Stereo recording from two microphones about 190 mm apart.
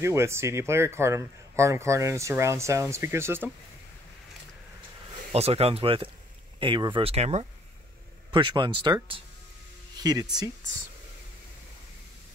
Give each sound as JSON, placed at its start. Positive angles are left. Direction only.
{"t": 0.0, "sound": "speech", "side_deg": -15}
{"t": 5.3, "sound": "speech", "side_deg": -30}